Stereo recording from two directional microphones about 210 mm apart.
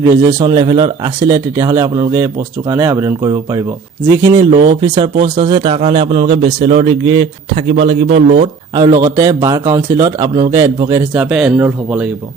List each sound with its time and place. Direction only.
0.0 s a man's voice: 15° right (ahead or behind)
8.7 s speech: 20° right (ahead or behind)
11.1 s speech: 5° right (ahead or behind)